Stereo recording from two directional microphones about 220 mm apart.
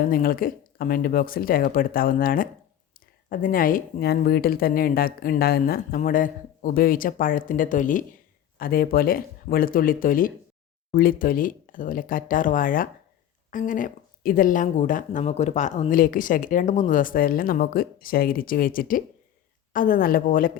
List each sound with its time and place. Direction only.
0.1 s speech: 40° left (ahead or behind)